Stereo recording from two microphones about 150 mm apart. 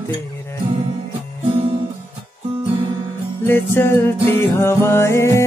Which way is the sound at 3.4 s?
15° left (ahead or behind).